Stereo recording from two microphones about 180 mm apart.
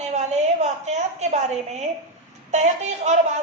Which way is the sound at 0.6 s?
40° right (ahead or behind).